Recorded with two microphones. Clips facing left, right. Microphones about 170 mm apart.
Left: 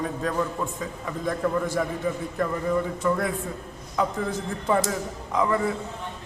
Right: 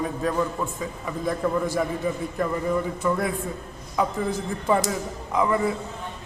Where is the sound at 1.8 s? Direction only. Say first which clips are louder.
Right 1 dB; 10° right (ahead or behind).